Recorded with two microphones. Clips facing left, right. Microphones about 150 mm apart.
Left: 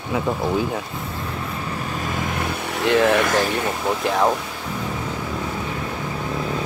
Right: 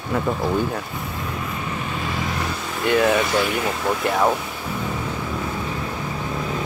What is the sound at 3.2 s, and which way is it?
Speech, 50° left (ahead or behind).